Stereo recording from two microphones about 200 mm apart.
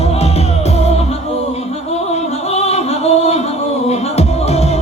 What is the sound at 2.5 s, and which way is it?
Music, 30° left (ahead or behind).